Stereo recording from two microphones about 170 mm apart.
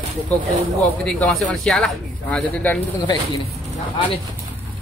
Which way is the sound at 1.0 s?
Centre (ahead or behind).